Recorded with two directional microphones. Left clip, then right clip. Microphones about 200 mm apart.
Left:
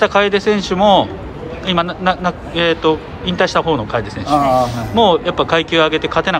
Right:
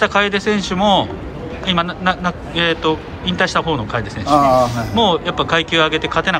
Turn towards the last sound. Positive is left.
turn(degrees=10)  # may be behind; listen again after turning